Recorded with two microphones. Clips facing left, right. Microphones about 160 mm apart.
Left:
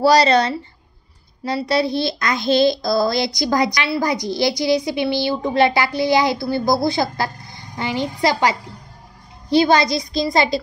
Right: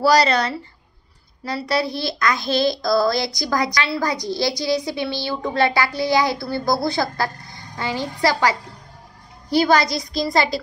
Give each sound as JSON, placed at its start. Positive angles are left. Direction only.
{"t": 0.0, "sound": "a child's voice", "side_deg": 25}